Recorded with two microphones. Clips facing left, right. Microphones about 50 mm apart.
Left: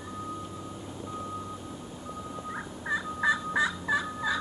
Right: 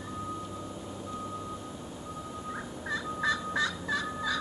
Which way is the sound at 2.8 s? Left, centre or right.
Centre.